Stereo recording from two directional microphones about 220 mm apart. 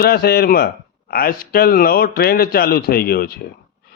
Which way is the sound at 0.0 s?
45° left (ahead or behind).